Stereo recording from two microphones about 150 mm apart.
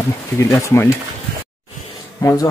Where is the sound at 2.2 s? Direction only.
20° left (ahead or behind).